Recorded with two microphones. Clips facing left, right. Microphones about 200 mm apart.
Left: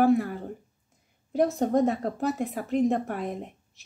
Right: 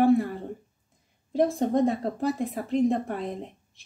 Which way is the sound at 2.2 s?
Centre (ahead or behind).